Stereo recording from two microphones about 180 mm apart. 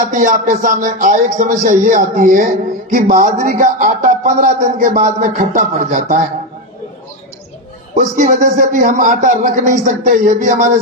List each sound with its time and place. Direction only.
0.1 s speech: 50° right (ahead or behind)
7.9 s speech: 45° right (ahead or behind)